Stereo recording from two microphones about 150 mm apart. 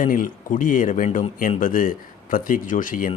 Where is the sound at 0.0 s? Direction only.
65° left (ahead or behind).